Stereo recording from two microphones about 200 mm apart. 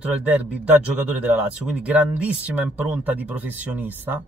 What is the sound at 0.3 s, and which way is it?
Speech, 5° right (ahead or behind).